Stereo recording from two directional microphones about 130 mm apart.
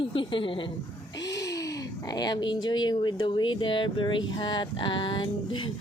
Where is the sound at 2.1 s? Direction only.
30° left (ahead or behind).